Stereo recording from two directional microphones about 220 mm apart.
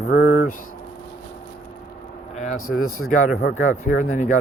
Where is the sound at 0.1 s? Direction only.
45° left (ahead or behind).